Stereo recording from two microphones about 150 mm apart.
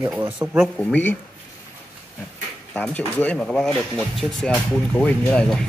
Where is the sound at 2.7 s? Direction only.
10° left (ahead or behind).